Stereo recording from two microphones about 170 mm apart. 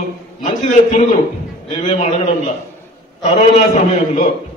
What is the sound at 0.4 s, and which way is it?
Speech, 45° left (ahead or behind).